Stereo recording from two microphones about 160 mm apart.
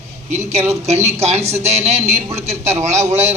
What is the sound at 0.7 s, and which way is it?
A man's voice, 45° right (ahead or behind).